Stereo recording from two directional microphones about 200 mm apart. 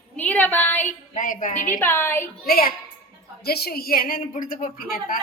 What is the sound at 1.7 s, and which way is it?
Speech, 10° left (ahead or behind).